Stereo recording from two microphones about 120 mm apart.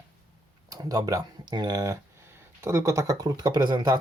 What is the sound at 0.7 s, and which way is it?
Speech, 30° right (ahead or behind).